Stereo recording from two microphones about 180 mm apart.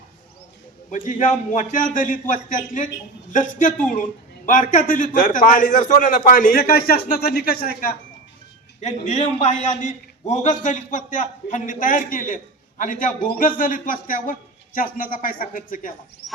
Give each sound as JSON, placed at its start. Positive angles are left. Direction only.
{"t": 0.9, "sound": "a man's voice", "side_deg": 45}
{"t": 8.8, "sound": "a man's voice", "side_deg": 40}